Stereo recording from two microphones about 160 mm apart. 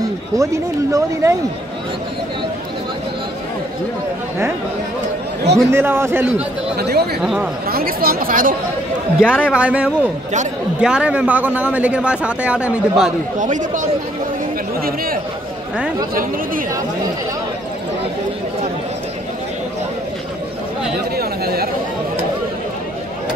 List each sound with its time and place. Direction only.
0.4 s speech: 20° right (ahead or behind)
5.7 s a man's voice: 15° right (ahead or behind)
6.8 s speech: 90° right
7.6 s speech: 70° right (ahead or behind)
9.2 s a man's voice: 5° right (ahead or behind)
13.4 s speech: 50° right (ahead or behind)
14.8 s speech: 70° right (ahead or behind)
21.2 s chatter: 75° right (ahead or behind)